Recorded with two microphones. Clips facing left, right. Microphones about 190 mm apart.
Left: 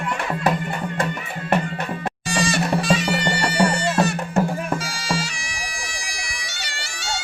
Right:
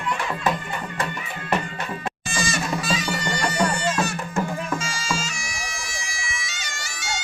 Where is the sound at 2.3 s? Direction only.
65° left (ahead or behind).